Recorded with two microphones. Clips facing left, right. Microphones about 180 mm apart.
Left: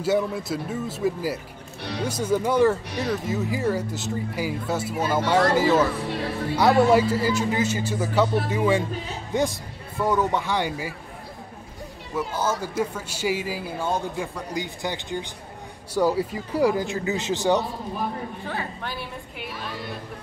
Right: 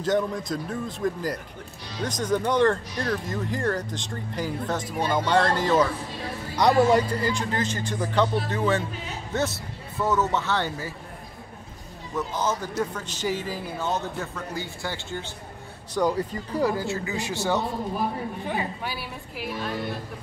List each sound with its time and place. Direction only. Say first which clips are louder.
0.0 s a man's voice: left 1 dB; 10° left (ahead or behind)
12.2 s a man's voice: left 1 dB; 10° left (ahead or behind)
18.4 s a woman's voice: right 2 dB; 15° right (ahead or behind)